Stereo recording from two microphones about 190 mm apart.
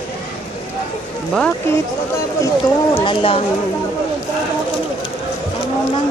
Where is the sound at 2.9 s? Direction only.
30° left (ahead or behind).